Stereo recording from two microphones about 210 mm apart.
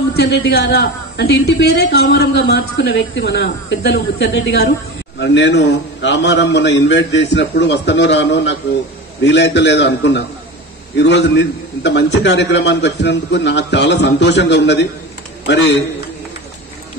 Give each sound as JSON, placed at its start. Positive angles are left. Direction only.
{"t": 0.1, "sound": "a man's voice", "side_deg": 50}